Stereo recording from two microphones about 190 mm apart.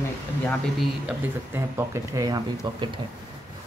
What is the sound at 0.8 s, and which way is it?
Speech, 10° right (ahead or behind).